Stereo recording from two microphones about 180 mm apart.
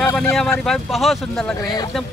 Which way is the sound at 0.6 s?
Centre (ahead or behind).